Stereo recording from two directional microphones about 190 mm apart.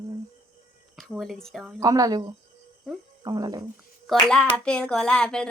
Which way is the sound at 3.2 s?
20° right (ahead or behind).